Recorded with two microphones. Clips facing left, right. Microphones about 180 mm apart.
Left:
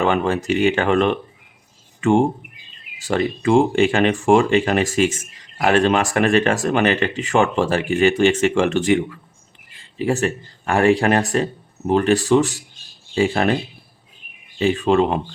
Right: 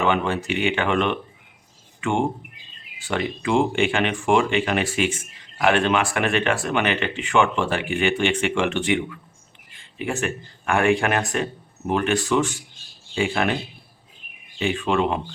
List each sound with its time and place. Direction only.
0.0 s speech: 45° left (ahead or behind)
14.6 s speech: 40° left (ahead or behind)